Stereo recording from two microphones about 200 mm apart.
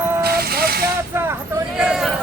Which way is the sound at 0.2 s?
50° right (ahead or behind).